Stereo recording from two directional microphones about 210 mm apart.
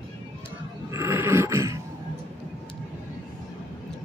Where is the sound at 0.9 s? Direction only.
15° right (ahead or behind).